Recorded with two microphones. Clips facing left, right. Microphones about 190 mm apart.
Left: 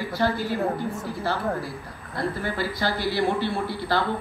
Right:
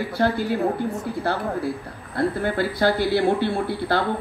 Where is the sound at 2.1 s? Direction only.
60° right (ahead or behind).